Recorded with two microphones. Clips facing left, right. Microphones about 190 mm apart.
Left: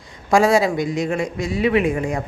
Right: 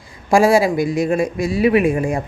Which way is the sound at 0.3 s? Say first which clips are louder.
Right 2 dB; 30° right (ahead or behind).